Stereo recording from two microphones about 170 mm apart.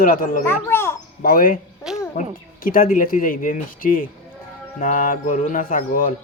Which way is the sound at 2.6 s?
55° left (ahead or behind).